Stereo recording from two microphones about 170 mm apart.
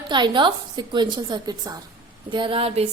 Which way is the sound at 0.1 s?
25° right (ahead or behind).